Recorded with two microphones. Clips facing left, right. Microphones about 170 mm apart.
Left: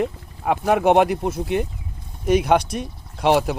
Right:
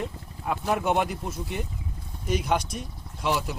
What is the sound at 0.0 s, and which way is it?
Boat, 75° left (ahead or behind).